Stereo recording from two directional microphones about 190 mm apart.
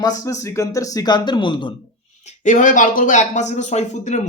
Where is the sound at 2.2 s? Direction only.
40° left (ahead or behind).